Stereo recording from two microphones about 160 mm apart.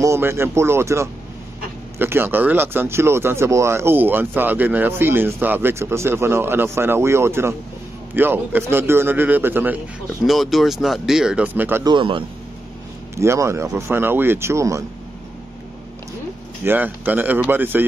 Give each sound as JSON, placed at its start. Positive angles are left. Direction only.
{"t": 0.0, "sound": "speech", "side_deg": -15}
{"t": 10.2, "sound": "speech", "side_deg": 0}
{"t": 11.8, "sound": "a man's voice", "side_deg": -30}
{"t": 13.1, "sound": "speech", "side_deg": -15}
{"t": 16.6, "sound": "speech", "side_deg": -10}